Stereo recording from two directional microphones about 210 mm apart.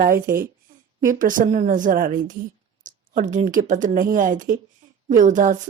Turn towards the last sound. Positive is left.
turn(degrees=-40)  # may be behind; listen again after turning